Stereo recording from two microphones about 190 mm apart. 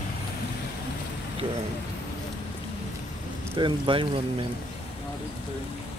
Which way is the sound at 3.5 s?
25° right (ahead or behind).